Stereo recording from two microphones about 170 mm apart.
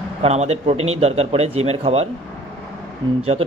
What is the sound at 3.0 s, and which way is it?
Speech, 25° right (ahead or behind).